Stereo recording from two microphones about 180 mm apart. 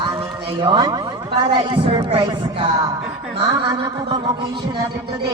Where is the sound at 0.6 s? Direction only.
25° right (ahead or behind).